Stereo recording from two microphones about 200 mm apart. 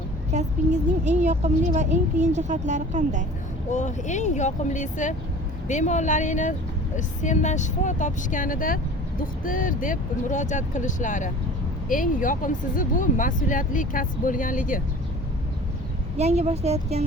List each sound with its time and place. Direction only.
0.3 s a woman's voice: 35° right (ahead or behind)
3.7 s speech: 35° left (ahead or behind)
16.1 s a woman's voice: 30° right (ahead or behind)